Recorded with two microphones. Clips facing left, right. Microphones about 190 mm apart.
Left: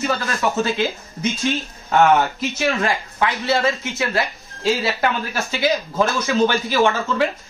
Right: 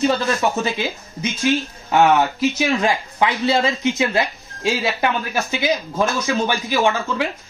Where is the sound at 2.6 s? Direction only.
15° right (ahead or behind).